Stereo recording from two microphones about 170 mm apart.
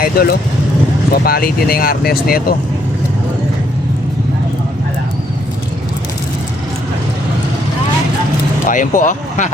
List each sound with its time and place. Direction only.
0.0 s speech: 60° left (ahead or behind)
8.6 s speech: 50° left (ahead or behind)